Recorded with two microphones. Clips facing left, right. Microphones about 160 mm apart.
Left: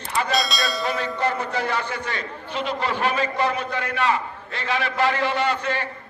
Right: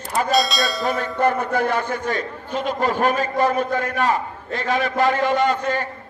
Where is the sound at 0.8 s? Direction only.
50° right (ahead or behind).